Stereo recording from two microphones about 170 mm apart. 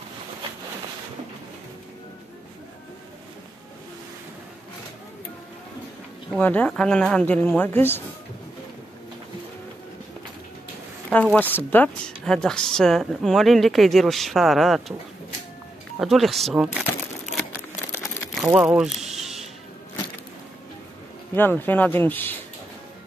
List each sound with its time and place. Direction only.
6.4 s speech: 10° left (ahead or behind)
11.1 s a woman's voice: 5° left (ahead or behind)
16.0 s a woman's voice: centre (ahead or behind)
17.9 s crumpling: 15° left (ahead or behind)
18.3 s a sound: 5° right (ahead or behind)
21.4 s speech: 10° left (ahead or behind)